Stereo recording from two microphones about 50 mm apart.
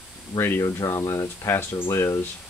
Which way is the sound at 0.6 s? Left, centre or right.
Left.